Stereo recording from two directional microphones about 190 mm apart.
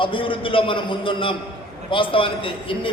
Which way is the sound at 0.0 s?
25° left (ahead or behind).